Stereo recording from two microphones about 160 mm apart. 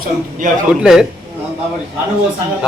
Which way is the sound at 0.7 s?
5° right (ahead or behind).